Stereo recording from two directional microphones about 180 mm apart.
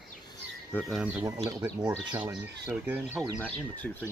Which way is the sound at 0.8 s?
5° right (ahead or behind).